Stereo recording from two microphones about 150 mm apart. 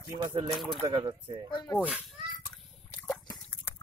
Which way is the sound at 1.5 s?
25° left (ahead or behind).